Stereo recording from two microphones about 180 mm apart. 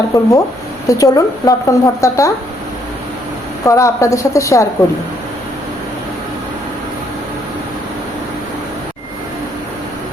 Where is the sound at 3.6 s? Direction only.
15° left (ahead or behind).